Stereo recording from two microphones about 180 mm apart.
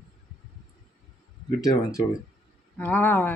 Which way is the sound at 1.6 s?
20° left (ahead or behind).